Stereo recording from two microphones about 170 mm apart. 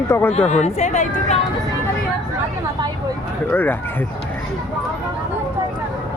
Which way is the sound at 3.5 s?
10° left (ahead or behind).